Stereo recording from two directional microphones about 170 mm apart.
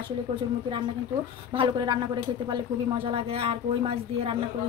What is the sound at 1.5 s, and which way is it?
A woman's voice, 30° right (ahead or behind).